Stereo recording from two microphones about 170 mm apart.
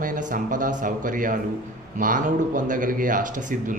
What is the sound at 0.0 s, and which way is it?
Speech, 50° right (ahead or behind).